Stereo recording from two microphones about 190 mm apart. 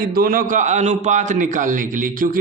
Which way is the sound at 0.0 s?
50° right (ahead or behind).